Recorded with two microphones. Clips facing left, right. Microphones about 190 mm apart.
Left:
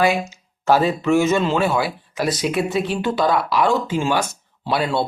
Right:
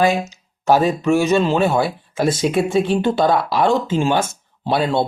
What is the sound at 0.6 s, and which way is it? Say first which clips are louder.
Speech: right 2 dB; 15° right (ahead or behind).